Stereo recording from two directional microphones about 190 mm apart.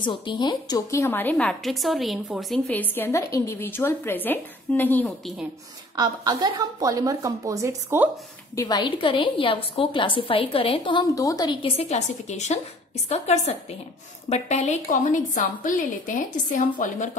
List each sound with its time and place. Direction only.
0.0 s a woman's voice: 25° left (ahead or behind); by 5.5 s centre (ahead or behind)
5.9 s a woman's voice: 20° right (ahead or behind)
8.5 s a woman's voice: 20° left (ahead or behind); by 17.1 s 45° left (ahead or behind)